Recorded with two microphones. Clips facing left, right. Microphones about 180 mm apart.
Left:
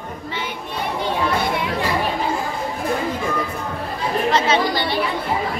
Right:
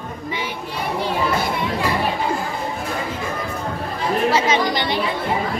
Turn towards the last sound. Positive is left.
turn(degrees=-10)  # may be behind; listen again after turning